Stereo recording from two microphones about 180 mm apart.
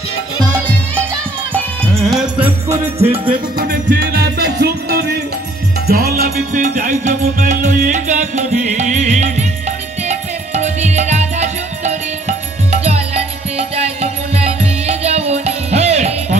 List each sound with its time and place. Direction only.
1.5 s music: centre (ahead or behind)
2.8 s music: 35° right (ahead or behind)
3.5 s music: 55° right (ahead or behind); by 16.3 s 40° right (ahead or behind)